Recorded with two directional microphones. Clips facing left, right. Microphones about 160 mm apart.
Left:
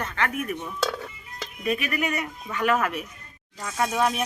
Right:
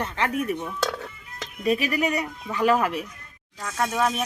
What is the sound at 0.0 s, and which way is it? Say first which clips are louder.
Speech: right 2 dB; 30° right (ahead or behind).